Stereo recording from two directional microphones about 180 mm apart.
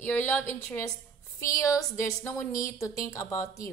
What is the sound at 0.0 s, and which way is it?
A woman's voice, 10° left (ahead or behind).